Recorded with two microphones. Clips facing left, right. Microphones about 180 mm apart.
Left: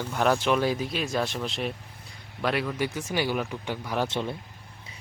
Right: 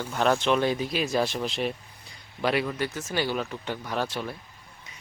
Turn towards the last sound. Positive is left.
turn(degrees=25)  # may be behind; listen again after turning